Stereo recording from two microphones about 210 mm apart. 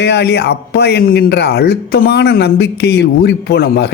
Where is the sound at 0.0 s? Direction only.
55° left (ahead or behind).